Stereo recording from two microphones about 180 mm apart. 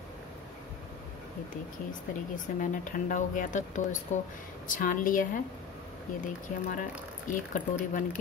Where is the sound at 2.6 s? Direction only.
45° left (ahead or behind).